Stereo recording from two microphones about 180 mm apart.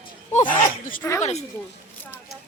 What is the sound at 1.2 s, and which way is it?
Speech, 35° left (ahead or behind).